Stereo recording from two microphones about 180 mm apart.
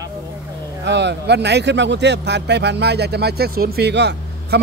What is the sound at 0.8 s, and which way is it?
Speech, 70° right (ahead or behind).